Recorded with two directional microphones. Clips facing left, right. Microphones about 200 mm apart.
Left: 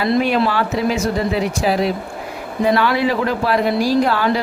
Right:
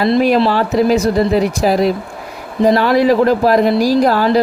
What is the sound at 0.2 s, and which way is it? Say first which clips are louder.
Speech: right 5 dB; 35° right (ahead or behind).